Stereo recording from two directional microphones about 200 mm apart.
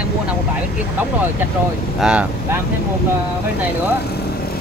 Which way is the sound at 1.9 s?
5° right (ahead or behind).